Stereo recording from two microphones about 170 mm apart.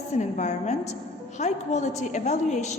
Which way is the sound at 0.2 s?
45° left (ahead or behind).